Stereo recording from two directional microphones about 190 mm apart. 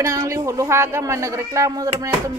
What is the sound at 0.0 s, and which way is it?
Speech, 15° right (ahead or behind).